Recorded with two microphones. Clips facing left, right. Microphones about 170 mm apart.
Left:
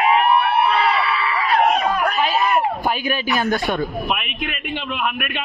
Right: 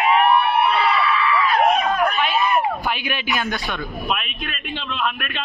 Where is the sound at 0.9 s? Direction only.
30° left (ahead or behind).